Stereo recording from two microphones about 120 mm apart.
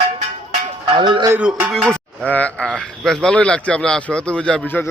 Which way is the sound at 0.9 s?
40° right (ahead or behind).